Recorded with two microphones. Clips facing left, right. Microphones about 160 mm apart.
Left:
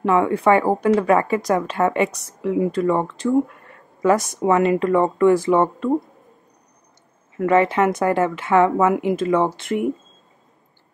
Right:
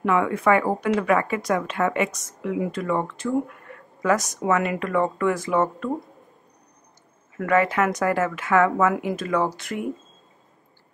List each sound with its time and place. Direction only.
0.0 s speech: 30° left (ahead or behind)
3.7 s a sound: 30° left (ahead or behind)
4.0 s a woman's voice: 30° left (ahead or behind)
7.3 s speech: 25° left (ahead or behind)